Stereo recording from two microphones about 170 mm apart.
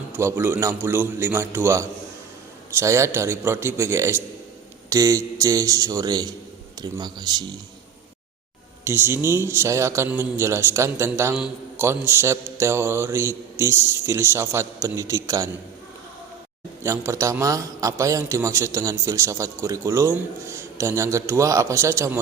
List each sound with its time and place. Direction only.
0.1 s a man's voice: 15° right (ahead or behind)
8.8 s a man's voice: 15° right (ahead or behind)
16.8 s a man's voice: 15° right (ahead or behind)